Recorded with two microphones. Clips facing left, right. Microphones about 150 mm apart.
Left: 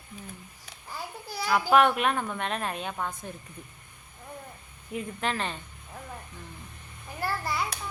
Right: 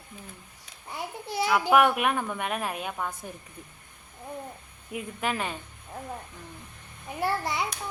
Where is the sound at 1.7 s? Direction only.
10° right (ahead or behind).